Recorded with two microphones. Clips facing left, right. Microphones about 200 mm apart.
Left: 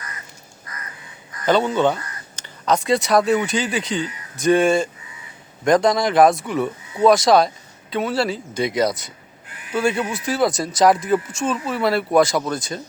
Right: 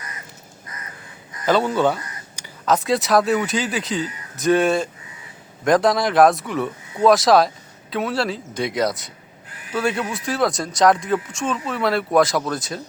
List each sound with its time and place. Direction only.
0.7 s crow: 25° right (ahead or behind)
1.5 s speech: 5° right (ahead or behind)